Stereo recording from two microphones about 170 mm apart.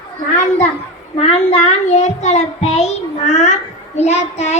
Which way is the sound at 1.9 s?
40° left (ahead or behind).